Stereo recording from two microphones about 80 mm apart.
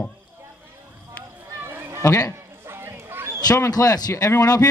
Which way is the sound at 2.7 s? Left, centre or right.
Right.